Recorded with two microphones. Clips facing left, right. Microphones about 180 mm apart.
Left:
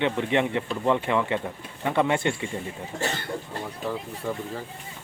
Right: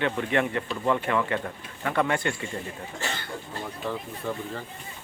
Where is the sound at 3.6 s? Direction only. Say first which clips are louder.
Left 1 dB; 5° left (ahead or behind).